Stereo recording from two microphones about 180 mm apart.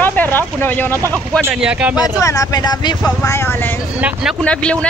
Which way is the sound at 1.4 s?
10° right (ahead or behind).